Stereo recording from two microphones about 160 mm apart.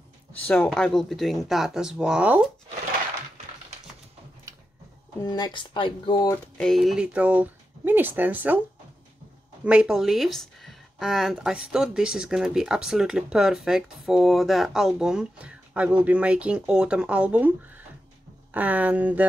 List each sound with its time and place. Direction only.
0.5 s speech: 5° left (ahead or behind)
4.5 s a sound: 20° right (ahead or behind)
5.2 s speech: 25° left (ahead or behind)
6.6 s speech: centre (ahead or behind)
9.7 s speech: 5° right (ahead or behind)